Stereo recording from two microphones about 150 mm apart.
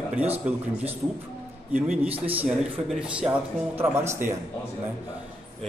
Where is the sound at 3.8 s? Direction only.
15° right (ahead or behind).